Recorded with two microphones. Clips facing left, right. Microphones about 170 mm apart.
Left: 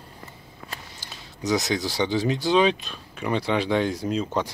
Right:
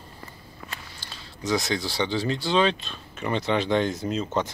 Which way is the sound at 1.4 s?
20° left (ahead or behind).